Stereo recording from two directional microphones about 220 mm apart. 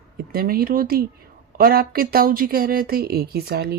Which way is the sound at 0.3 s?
40° right (ahead or behind).